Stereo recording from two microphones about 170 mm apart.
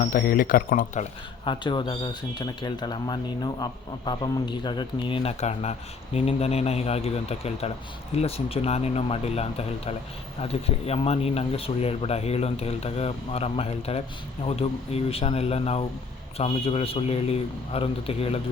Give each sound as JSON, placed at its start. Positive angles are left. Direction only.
{"t": 0.0, "sound": "speech", "side_deg": 55}
{"t": 1.5, "sound": "speech", "side_deg": 30}